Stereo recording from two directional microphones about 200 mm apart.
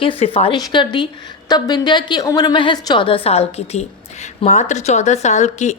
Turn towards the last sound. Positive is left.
turn(degrees=35)  # may be behind; listen again after turning